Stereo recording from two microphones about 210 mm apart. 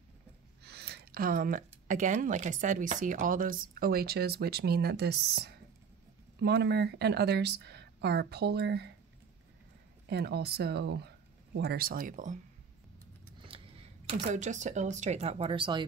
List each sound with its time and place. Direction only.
0.7 s speech: 50° right (ahead or behind)
10.0 s speech: 50° right (ahead or behind)
13.5 s a sound: 25° right (ahead or behind)
14.2 s speech: 35° right (ahead or behind)